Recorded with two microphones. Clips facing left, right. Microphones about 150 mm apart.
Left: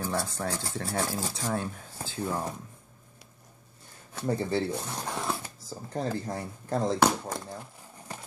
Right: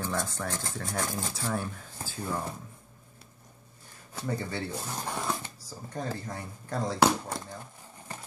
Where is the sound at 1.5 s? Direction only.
20° left (ahead or behind).